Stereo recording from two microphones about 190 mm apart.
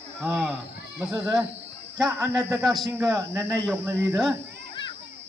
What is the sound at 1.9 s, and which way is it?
Speech, 15° right (ahead or behind).